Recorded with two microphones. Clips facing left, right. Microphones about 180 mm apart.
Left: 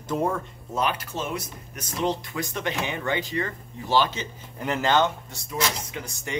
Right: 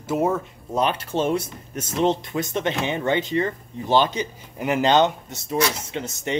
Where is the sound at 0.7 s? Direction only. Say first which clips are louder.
Right 5 dB; 25° right (ahead or behind).